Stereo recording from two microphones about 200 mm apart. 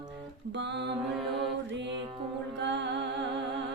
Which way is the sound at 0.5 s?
60° right (ahead or behind).